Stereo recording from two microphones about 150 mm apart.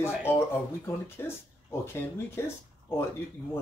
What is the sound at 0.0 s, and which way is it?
Speech, 15° left (ahead or behind).